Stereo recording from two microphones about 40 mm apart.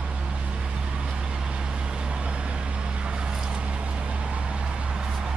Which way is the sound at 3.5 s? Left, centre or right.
Right.